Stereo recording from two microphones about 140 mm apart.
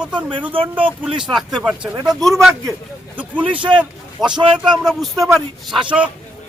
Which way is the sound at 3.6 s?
35° right (ahead or behind).